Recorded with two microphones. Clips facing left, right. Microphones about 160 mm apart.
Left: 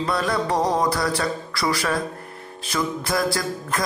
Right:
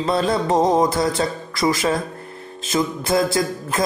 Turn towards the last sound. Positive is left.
turn(degrees=-20)  # may be behind; listen again after turning